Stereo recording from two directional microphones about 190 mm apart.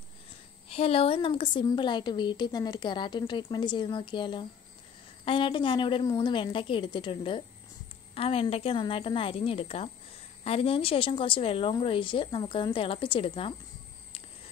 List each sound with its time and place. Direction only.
0.7 s a woman's voice: 30° left (ahead or behind)